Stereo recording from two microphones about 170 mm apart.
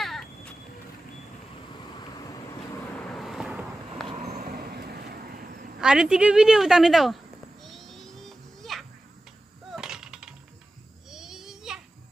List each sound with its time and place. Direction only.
0.0 s a sound: centre (ahead or behind)
1.7 s vehicle: 25° left (ahead or behind)
3.0 s vehicle: centre (ahead or behind)
4.3 s vehicle: 60° right (ahead or behind)
5.8 s a woman's voice: 5° right (ahead or behind)
7.6 s music: centre (ahead or behind)
9.7 s a sound: 5° right (ahead or behind)